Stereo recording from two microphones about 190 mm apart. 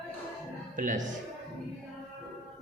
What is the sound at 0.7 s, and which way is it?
Speech, 45° right (ahead or behind).